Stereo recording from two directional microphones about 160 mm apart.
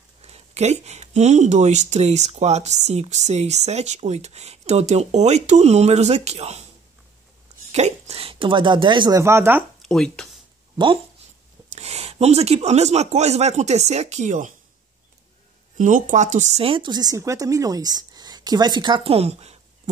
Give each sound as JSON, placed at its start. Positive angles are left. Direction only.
{"t": 0.2, "sound": "speech", "side_deg": -40}
{"t": 7.7, "sound": "speech", "side_deg": -40}
{"t": 9.2, "sound": "speech", "side_deg": -15}
{"t": 9.8, "sound": "speech", "side_deg": 5}
{"t": 11.7, "sound": "speech", "side_deg": -40}
{"t": 15.8, "sound": "speech", "side_deg": -50}